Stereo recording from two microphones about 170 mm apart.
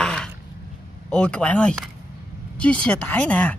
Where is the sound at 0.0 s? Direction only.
5° left (ahead or behind).